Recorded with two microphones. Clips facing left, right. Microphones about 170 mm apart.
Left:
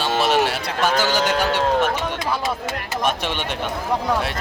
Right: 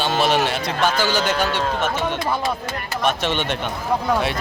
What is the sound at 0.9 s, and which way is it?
Speech, 15° left (ahead or behind).